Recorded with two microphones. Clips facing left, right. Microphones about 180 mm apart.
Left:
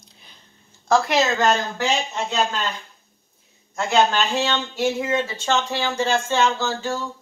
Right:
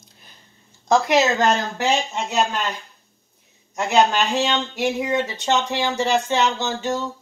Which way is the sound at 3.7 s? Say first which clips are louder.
Right 1 dB; 15° right (ahead or behind).